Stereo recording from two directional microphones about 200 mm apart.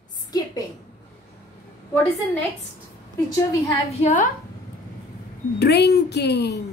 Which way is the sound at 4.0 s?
40° left (ahead or behind).